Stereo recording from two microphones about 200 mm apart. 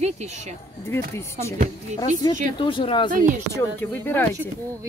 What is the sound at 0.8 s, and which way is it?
Speech, 10° left (ahead or behind).